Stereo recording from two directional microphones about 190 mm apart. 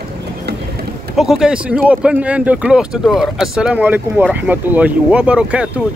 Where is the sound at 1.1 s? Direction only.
5° right (ahead or behind).